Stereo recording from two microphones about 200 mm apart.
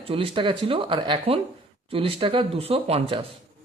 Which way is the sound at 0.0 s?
30° right (ahead or behind).